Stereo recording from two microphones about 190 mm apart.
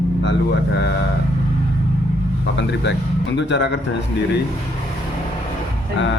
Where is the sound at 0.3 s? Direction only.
65° left (ahead or behind).